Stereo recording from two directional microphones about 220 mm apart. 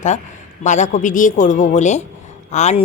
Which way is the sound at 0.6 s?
35° left (ahead or behind).